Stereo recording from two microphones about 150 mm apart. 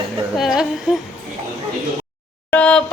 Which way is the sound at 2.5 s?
10° left (ahead or behind).